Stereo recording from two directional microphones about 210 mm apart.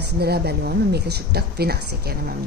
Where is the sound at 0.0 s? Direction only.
50° right (ahead or behind).